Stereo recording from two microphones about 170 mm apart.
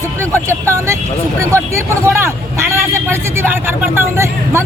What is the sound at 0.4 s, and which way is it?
A man's voice, 15° right (ahead or behind).